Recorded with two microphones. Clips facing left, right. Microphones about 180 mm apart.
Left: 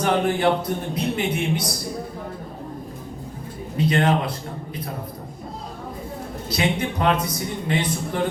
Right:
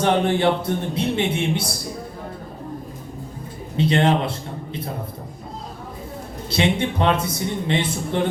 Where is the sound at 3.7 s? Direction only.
25° right (ahead or behind).